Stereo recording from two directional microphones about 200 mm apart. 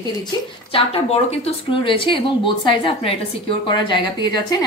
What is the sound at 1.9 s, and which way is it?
A woman's voice, 25° left (ahead or behind).